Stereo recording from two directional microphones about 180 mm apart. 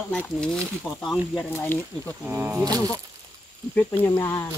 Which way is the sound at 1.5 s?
10° left (ahead or behind).